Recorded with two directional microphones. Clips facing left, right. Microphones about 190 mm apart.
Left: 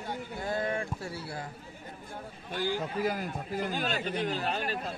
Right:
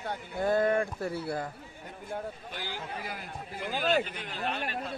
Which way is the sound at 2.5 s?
45° left (ahead or behind).